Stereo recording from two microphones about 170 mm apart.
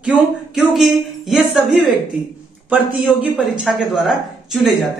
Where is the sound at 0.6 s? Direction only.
Centre (ahead or behind).